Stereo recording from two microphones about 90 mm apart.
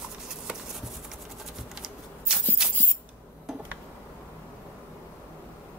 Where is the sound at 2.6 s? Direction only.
10° right (ahead or behind).